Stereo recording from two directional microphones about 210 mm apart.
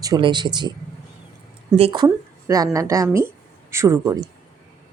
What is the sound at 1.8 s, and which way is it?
A woman's voice, 25° right (ahead or behind).